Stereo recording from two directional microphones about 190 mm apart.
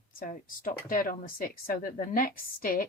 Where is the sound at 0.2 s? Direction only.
45° left (ahead or behind).